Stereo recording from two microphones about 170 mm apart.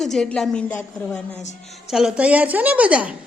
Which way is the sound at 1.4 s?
45° left (ahead or behind).